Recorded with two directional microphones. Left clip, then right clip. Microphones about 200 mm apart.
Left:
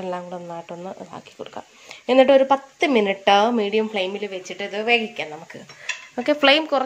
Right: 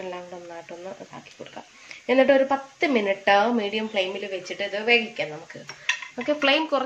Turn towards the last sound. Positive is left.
turn(degrees=35)  # may be behind; listen again after turning